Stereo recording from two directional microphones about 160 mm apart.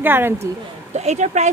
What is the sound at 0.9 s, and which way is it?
Speech, 45° right (ahead or behind).